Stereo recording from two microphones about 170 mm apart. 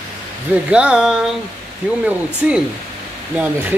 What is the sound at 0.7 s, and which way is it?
Speech, 5° right (ahead or behind).